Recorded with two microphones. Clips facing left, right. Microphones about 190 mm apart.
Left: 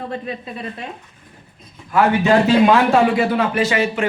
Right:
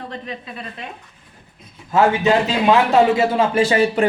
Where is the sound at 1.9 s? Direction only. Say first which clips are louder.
Left 1 dB; 25° right (ahead or behind).